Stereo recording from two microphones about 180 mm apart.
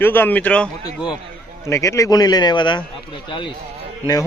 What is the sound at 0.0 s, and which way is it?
Speech, 10° left (ahead or behind).